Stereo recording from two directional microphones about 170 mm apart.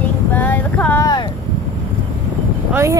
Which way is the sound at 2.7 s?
15° right (ahead or behind).